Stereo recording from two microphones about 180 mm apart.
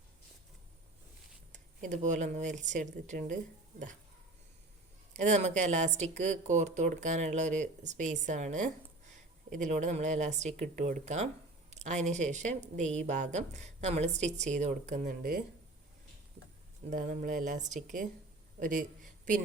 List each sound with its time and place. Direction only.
1.5 s speech: 45° right (ahead or behind)
5.1 s speech: 40° right (ahead or behind)
16.9 s speech: 45° right (ahead or behind)